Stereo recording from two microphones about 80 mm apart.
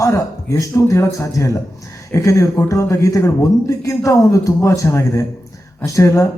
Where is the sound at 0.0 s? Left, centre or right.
Left.